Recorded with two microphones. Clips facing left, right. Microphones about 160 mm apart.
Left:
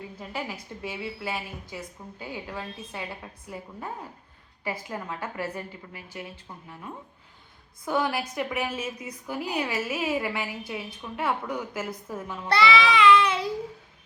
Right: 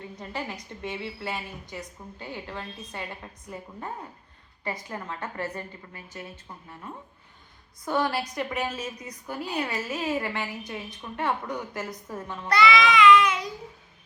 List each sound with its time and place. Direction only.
0.2 s a woman's voice: 5° left (ahead or behind)
7.9 s a woman's voice: 10° left (ahead or behind)
12.5 s child singing: 30° left (ahead or behind)